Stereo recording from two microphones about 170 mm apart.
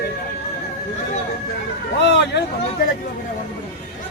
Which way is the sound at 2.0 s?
90° left.